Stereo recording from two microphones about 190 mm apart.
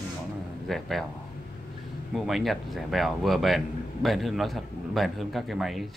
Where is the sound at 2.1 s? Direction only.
Centre (ahead or behind).